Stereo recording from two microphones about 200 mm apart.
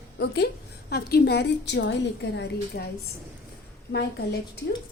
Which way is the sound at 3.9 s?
55° left (ahead or behind).